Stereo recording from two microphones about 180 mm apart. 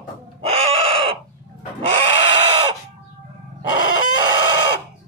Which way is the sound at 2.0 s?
35° right (ahead or behind).